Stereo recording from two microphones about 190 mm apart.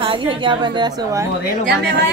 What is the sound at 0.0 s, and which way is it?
A woman's voice, 25° right (ahead or behind).